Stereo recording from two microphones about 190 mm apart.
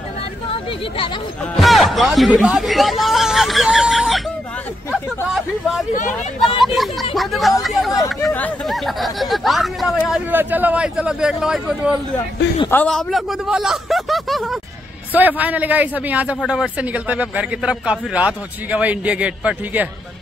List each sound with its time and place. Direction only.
0.5 s speech: 25° left (ahead or behind)
1.6 s speech: centre (ahead or behind)
12.6 s a man's voice: 5° left (ahead or behind)